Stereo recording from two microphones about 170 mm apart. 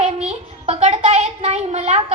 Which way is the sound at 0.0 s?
40° right (ahead or behind).